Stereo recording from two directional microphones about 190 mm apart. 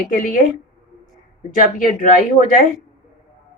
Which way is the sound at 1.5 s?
45° left (ahead or behind).